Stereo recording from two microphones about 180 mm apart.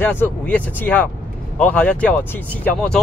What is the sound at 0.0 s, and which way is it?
Speech, 10° left (ahead or behind).